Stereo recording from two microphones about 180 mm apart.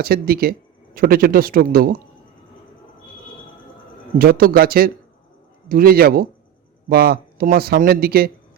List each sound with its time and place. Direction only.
0.0 s a man's voice: 55° right (ahead or behind)
4.2 s speech: 55° right (ahead or behind)